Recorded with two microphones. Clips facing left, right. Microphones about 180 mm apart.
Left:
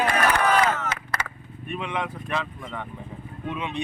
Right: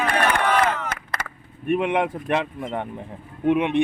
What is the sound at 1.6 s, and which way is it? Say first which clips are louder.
Speech: right 9 dB; 55° right (ahead or behind).